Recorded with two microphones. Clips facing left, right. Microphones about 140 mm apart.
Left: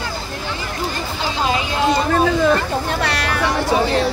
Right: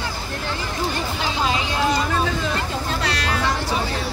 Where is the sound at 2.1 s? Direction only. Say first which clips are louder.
Left 8 dB; 55° left (ahead or behind).